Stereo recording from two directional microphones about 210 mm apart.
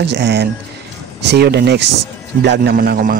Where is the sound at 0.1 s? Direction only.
55° right (ahead or behind).